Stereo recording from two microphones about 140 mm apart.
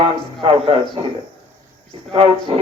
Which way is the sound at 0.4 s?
40° right (ahead or behind).